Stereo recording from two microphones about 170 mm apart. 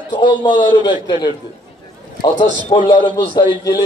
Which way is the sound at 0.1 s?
25° left (ahead or behind).